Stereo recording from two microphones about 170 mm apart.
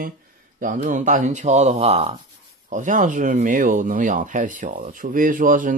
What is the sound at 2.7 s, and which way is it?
Speech, 50° right (ahead or behind).